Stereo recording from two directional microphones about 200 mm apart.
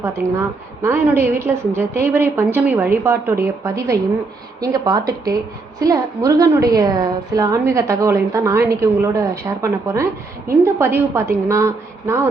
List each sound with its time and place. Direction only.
0.8 s a woman's voice: 10° right (ahead or behind)